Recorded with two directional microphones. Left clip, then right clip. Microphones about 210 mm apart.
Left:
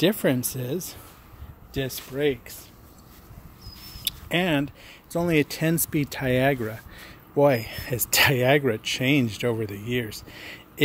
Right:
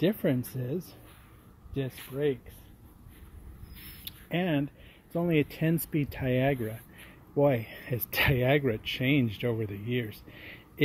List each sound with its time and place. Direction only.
0.0 s speech: 5° right (ahead or behind)
4.0 s speech: 10° right (ahead or behind)